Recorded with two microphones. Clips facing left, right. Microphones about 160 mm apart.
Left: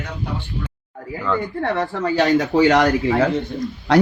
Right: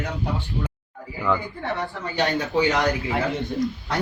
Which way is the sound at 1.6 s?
80° left.